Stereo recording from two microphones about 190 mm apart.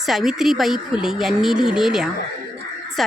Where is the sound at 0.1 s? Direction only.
Centre (ahead or behind).